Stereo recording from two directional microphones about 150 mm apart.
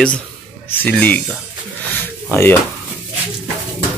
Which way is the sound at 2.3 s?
15° left (ahead or behind).